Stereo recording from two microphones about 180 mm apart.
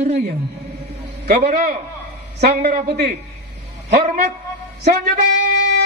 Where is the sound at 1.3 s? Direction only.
55° right (ahead or behind).